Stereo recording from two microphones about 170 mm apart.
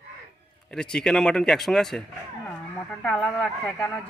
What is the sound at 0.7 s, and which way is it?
Speech, 5° left (ahead or behind).